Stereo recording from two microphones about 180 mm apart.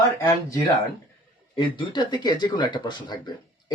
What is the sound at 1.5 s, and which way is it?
Speech, 25° left (ahead or behind).